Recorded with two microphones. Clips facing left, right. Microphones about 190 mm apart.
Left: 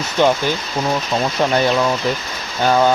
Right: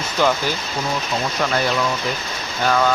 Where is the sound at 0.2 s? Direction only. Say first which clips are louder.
Left 4 dB; 20° left (ahead or behind).